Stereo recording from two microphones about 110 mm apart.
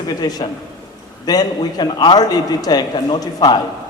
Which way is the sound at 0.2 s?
35° left (ahead or behind).